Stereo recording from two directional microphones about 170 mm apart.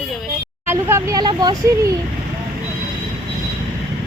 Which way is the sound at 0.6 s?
15° right (ahead or behind).